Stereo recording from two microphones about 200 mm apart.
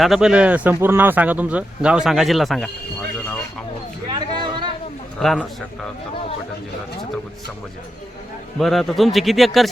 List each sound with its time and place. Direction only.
0.0 s speech: centre (ahead or behind)
4.1 s a sound: 25° right (ahead or behind)
5.2 s speech: centre (ahead or behind)
8.5 s speech: centre (ahead or behind)